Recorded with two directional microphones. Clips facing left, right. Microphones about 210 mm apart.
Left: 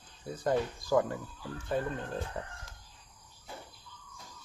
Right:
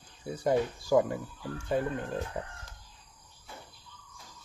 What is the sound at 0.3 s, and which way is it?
Speech, 10° right (ahead or behind).